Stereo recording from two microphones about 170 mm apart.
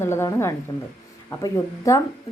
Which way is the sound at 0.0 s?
15° left (ahead or behind).